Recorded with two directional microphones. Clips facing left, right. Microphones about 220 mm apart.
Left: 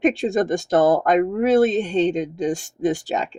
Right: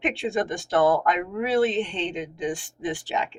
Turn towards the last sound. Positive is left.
turn(degrees=40)  # may be behind; listen again after turning